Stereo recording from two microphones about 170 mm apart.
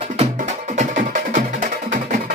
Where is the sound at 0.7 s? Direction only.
45° right (ahead or behind).